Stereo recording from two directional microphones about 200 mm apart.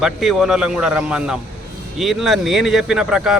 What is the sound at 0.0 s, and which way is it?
Speech, centre (ahead or behind).